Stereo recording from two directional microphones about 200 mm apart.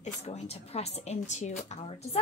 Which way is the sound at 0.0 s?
35° left (ahead or behind).